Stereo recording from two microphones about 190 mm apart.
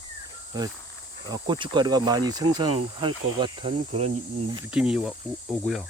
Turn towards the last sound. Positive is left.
turn(degrees=0)  # may be behind; listen again after turning